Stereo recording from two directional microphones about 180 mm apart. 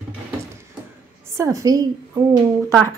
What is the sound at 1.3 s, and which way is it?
Speech, 15° right (ahead or behind).